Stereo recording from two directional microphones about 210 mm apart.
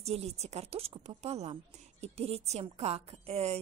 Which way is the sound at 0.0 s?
30° right (ahead or behind).